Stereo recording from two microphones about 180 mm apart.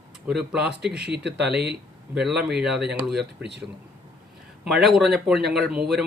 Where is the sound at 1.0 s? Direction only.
70° right (ahead or behind).